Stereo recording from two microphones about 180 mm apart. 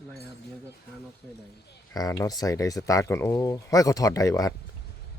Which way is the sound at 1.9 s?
20° left (ahead or behind).